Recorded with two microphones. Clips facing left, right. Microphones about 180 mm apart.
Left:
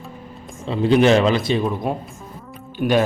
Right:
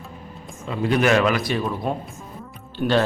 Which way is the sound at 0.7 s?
25° left (ahead or behind).